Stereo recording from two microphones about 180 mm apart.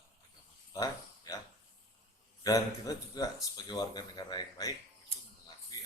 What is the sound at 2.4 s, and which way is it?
Speech, 20° left (ahead or behind).